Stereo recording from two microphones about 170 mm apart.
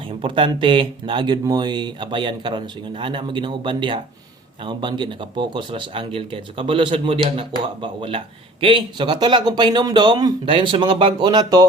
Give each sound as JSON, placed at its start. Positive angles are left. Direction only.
{"t": 0.0, "sound": "speech", "side_deg": -30}